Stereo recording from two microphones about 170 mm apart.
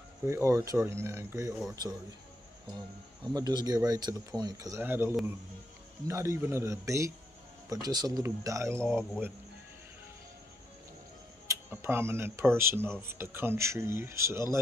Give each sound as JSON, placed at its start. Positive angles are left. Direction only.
{"t": 0.3, "sound": "speech", "side_deg": -15}
{"t": 3.3, "sound": "speech", "side_deg": -25}
{"t": 11.4, "sound": "speech", "side_deg": -15}